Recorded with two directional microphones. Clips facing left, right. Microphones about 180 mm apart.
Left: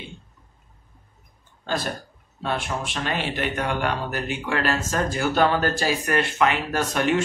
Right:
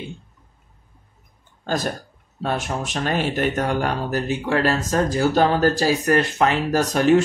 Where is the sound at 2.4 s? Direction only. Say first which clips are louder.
Right 3 dB; 45° right (ahead or behind).